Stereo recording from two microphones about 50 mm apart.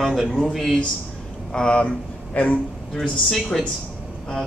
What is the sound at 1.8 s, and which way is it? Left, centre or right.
Speech, left.